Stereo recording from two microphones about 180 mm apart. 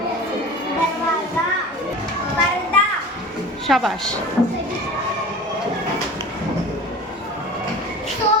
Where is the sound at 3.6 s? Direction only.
Centre (ahead or behind).